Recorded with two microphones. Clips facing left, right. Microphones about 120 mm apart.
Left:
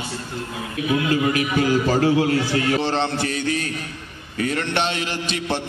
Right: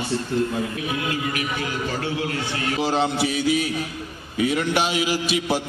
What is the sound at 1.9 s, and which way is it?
Speech, 35° left (ahead or behind).